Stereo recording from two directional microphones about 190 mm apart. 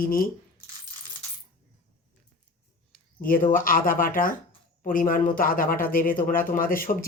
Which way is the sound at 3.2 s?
50° left (ahead or behind).